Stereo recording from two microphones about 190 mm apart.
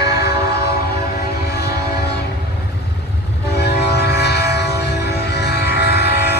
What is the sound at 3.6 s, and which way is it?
Train, 60° left (ahead or behind).